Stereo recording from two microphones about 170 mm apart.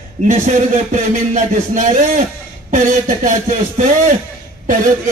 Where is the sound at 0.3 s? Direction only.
45° right (ahead or behind).